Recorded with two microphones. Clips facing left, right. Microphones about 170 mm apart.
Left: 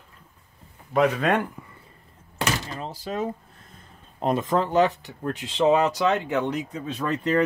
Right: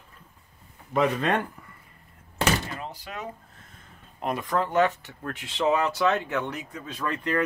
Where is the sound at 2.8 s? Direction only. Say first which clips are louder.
Left 7 dB; 30° left (ahead or behind).